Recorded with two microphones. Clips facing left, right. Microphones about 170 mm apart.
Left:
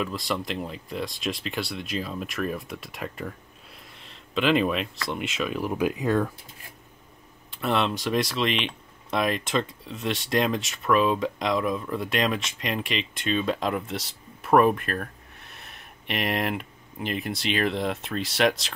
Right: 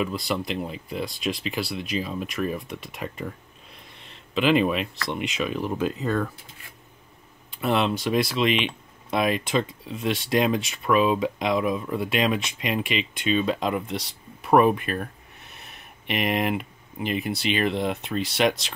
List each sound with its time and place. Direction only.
0.0 s speech: centre (ahead or behind); by 6.3 s 15° left (ahead or behind)
7.6 s speech: centre (ahead or behind)